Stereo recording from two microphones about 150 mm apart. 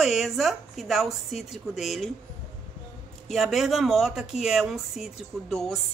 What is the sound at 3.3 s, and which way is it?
A woman's voice, centre (ahead or behind).